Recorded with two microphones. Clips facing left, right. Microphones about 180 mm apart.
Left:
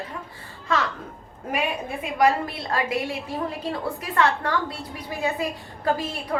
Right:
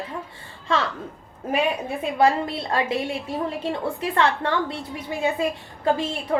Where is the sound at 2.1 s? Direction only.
25° right (ahead or behind).